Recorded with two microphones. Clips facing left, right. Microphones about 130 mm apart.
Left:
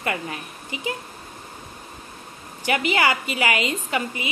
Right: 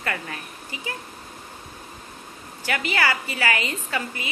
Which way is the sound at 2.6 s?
20° left (ahead or behind).